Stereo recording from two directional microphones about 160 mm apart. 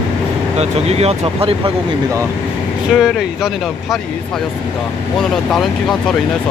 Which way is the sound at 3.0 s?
Centre (ahead or behind).